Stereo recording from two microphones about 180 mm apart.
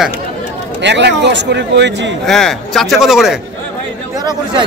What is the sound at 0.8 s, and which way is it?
A man's voice, 75° right (ahead or behind).